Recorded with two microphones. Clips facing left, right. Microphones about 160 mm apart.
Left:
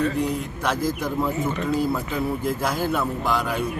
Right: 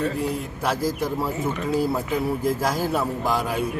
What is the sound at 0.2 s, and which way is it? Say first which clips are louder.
A man's voice: left 1 dB; 5° right (ahead or behind).